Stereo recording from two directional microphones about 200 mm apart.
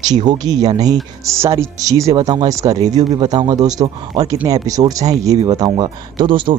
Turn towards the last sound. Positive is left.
turn(degrees=-25)  # may be behind; listen again after turning